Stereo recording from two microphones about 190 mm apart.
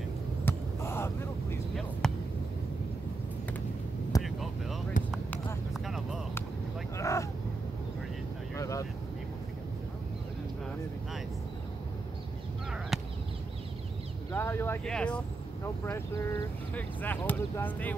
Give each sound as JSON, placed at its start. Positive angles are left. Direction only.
{"t": 0.5, "sound": "vehicle", "side_deg": 15}
{"t": 1.8, "sound": "basketball bounce", "side_deg": 5}
{"t": 4.2, "sound": "vehicle", "side_deg": 0}
{"t": 5.0, "sound": "a sound", "side_deg": 45}
{"t": 5.7, "sound": "vehicle", "side_deg": 0}
{"t": 7.0, "sound": "vehicle", "side_deg": 15}
{"t": 8.5, "sound": "vehicle", "side_deg": 15}
{"t": 12.9, "sound": "a sound", "side_deg": 0}
{"t": 14.3, "sound": "a sound", "side_deg": 10}
{"t": 15.8, "sound": "speech", "side_deg": 15}